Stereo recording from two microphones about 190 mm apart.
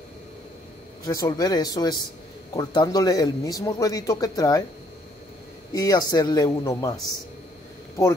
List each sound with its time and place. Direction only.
1.0 s a man's voice: 20° left (ahead or behind)
5.7 s a man's voice: 20° left (ahead or behind)